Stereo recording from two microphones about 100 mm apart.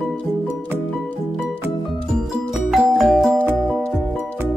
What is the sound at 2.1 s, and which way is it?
Music, 5° right (ahead or behind).